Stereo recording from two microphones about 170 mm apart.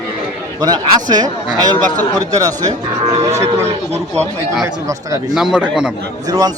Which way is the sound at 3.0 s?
35° right (ahead or behind).